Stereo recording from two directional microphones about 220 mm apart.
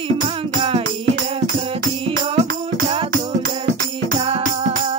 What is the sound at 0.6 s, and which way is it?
Music, 25° right (ahead or behind).